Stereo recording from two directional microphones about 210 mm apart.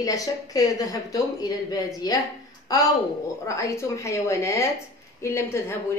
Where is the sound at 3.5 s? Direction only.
15° left (ahead or behind).